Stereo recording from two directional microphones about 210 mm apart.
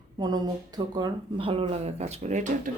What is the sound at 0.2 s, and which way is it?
Speech, 20° right (ahead or behind).